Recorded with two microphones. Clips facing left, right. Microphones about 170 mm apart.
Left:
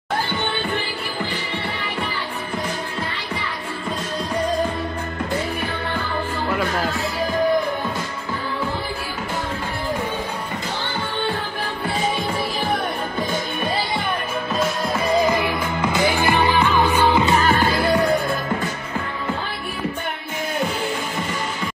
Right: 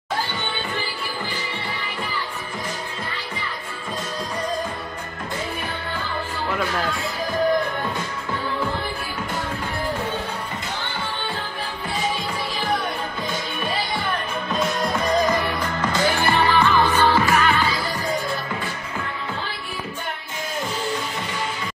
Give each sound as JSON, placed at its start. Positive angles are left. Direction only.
{"t": 14.5, "sound": "music", "side_deg": 0}
{"t": 17.5, "sound": "music", "side_deg": 50}